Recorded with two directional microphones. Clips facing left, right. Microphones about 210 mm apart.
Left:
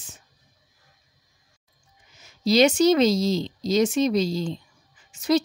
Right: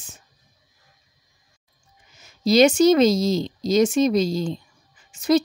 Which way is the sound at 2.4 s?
45° right (ahead or behind).